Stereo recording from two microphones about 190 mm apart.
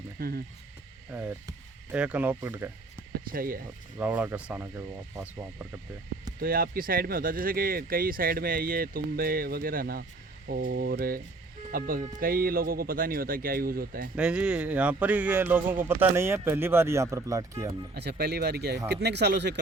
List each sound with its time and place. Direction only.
0.2 s speech: 55° right (ahead or behind)
1.1 s speech: 10° right (ahead or behind)
3.2 s speech: 50° right (ahead or behind)
3.9 s speech: 10° right (ahead or behind)
6.4 s speech: 50° right (ahead or behind)
14.2 s speech: 5° right (ahead or behind)
17.9 s speech: 60° right (ahead or behind)